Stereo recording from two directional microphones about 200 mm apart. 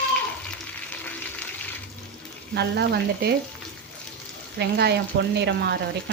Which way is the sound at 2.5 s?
55° right (ahead or behind).